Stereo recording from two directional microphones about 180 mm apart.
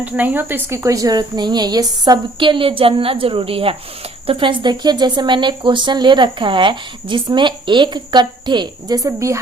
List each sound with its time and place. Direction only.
0.0 s speech: 10° right (ahead or behind)